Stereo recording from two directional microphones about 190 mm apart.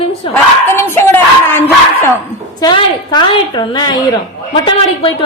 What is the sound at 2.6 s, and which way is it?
A woman's voice, 25° left (ahead or behind).